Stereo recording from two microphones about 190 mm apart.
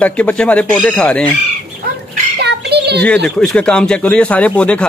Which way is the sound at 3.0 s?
5° left (ahead or behind).